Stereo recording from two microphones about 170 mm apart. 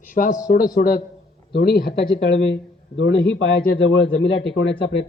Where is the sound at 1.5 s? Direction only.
70° left (ahead or behind); by 4.7 s 90° left.